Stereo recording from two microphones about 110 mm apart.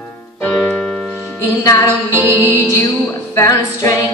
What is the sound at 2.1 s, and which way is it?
Music, 25° right (ahead or behind).